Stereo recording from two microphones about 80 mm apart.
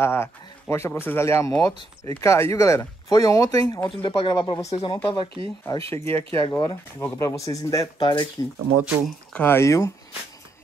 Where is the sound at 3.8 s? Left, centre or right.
Left.